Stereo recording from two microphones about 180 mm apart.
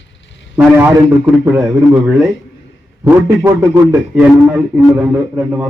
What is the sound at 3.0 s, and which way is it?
A man's voice, 15° right (ahead or behind).